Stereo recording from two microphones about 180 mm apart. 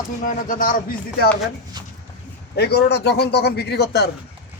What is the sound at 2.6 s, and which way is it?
A man's voice, 65° left (ahead or behind).